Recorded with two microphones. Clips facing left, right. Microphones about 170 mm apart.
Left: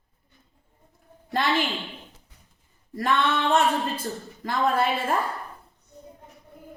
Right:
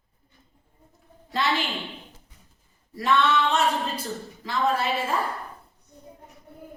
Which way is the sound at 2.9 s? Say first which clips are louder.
Right 2 dB; 50° left (ahead or behind).